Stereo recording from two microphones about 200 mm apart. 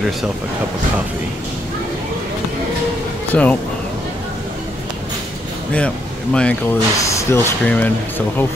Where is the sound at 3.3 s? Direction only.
5° left (ahead or behind).